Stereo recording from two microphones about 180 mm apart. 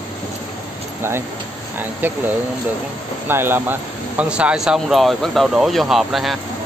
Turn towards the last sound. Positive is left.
turn(degrees=0)  # may be behind; listen again after turning